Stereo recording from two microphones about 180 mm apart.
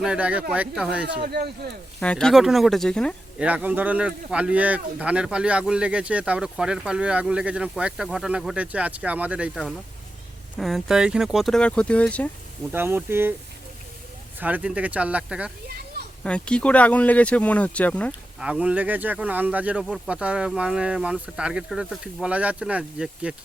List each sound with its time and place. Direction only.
0.0 s speech: 5° right (ahead or behind)
1.2 s speech: 60° right (ahead or behind)
2.0 s speech: 5° left (ahead or behind)
3.3 s speech: 10° right (ahead or behind); by 12.3 s 5° left (ahead or behind)
12.7 s speech: 10° right (ahead or behind)
14.3 s speech: 10° right (ahead or behind)
16.2 s speech: 5° left (ahead or behind)
18.4 s speech: 5° right (ahead or behind)